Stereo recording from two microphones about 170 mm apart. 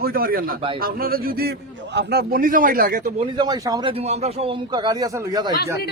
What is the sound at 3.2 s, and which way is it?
A man's voice, 25° right (ahead or behind).